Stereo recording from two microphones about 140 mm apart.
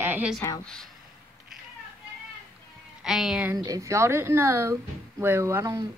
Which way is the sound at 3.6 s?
25° right (ahead or behind).